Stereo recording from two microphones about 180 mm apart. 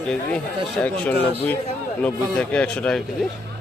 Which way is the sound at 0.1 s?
5° left (ahead or behind).